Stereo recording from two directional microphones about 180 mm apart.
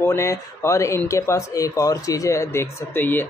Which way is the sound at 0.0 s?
15° left (ahead or behind).